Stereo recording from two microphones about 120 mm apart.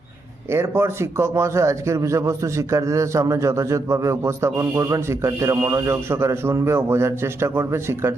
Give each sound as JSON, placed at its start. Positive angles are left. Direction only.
{"t": 0.5, "sound": "a man's voice", "side_deg": -20}